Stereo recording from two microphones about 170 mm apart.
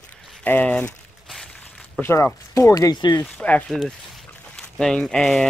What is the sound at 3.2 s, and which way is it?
Speech, 5° left (ahead or behind).